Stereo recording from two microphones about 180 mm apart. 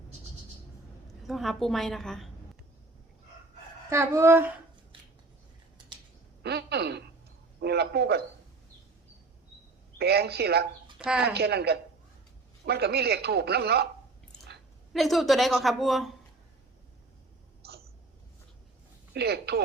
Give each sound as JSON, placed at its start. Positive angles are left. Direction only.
{"t": 1.3, "sound": "a woman's voice", "side_deg": 0}
{"t": 3.8, "sound": "speech", "side_deg": -15}
{"t": 6.4, "sound": "a sound", "side_deg": -65}
{"t": 7.6, "sound": "speech", "side_deg": -65}
{"t": 10.0, "sound": "speech", "side_deg": -65}
{"t": 10.9, "sound": "speech", "side_deg": -5}
{"t": 11.3, "sound": "speech", "side_deg": -65}
{"t": 14.9, "sound": "a woman's voice", "side_deg": 0}
{"t": 17.6, "sound": "hiccup", "side_deg": -60}
{"t": 19.1, "sound": "speech", "side_deg": -65}